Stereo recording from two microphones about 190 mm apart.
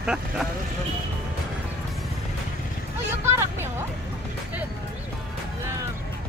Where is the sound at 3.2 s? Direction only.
15° right (ahead or behind).